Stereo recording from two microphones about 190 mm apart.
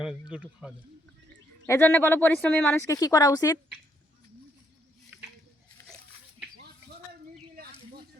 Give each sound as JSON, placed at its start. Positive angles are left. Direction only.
{"t": 0.0, "sound": "speech", "side_deg": -5}
{"t": 1.6, "sound": "speech", "side_deg": 10}
{"t": 2.8, "sound": "a woman's voice", "side_deg": 20}